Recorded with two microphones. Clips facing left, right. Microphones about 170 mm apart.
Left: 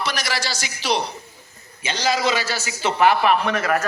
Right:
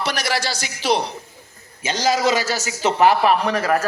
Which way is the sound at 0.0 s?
60° right (ahead or behind).